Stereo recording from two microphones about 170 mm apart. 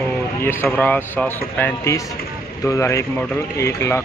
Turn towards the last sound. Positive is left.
turn(degrees=15)  # may be behind; listen again after turning